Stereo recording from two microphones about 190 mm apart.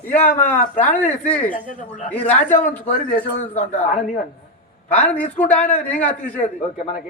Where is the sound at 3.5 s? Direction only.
40° left (ahead or behind).